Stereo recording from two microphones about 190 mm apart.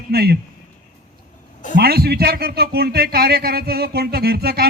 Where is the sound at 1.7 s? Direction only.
55° right (ahead or behind).